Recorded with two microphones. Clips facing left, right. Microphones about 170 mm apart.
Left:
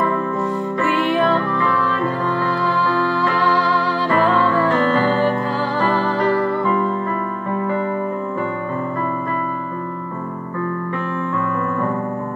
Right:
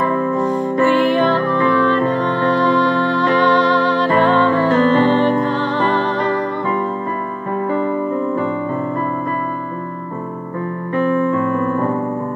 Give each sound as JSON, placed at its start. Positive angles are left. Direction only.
{"t": 1.1, "sound": "music", "side_deg": 0}
{"t": 2.6, "sound": "music", "side_deg": 5}
{"t": 4.3, "sound": "music", "side_deg": -30}